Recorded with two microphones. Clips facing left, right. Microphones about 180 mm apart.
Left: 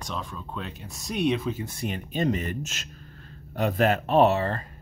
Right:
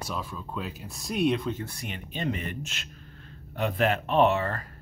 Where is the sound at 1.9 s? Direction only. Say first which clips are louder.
Left 6 dB; 40° left (ahead or behind).